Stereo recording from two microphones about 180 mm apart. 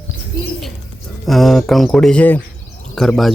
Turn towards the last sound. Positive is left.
turn(degrees=0)  # may be behind; listen again after turning